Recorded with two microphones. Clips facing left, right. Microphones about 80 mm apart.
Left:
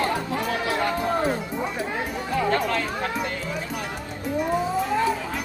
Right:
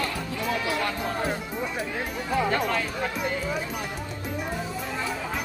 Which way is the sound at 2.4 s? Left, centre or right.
Centre.